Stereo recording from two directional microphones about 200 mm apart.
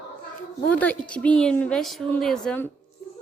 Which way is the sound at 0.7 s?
5° left (ahead or behind).